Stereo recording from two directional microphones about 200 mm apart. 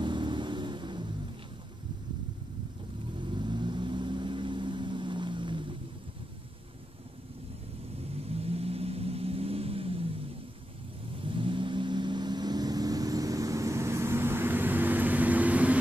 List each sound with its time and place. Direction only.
0.0 s vehicle: 25° right (ahead or behind)
3.2 s vehicle: 25° right (ahead or behind)
8.1 s vehicle: 30° right (ahead or behind)
11.1 s vehicle: 25° right (ahead or behind); by 15.8 s 5° right (ahead or behind)